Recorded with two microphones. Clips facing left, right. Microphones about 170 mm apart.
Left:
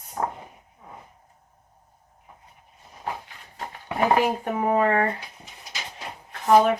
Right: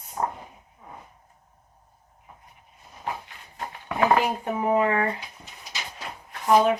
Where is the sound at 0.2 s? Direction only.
55° left (ahead or behind).